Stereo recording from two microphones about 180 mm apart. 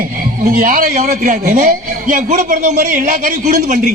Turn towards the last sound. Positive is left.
turn(degrees=-45)  # may be behind; listen again after turning